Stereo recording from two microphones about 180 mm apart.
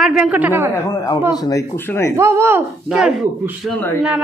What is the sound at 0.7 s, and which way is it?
Speech, 20° left (ahead or behind).